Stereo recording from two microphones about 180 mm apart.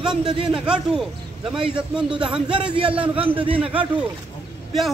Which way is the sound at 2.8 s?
30° right (ahead or behind).